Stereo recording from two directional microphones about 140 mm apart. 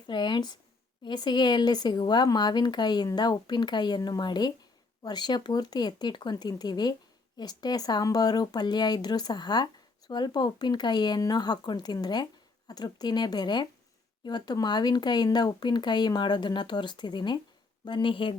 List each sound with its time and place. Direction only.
0.1 s speech: 35° left (ahead or behind)